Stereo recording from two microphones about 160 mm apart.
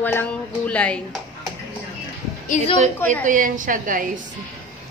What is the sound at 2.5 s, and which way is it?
Speech, 50° left (ahead or behind).